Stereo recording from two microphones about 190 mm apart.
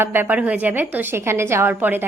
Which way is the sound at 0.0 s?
10° right (ahead or behind).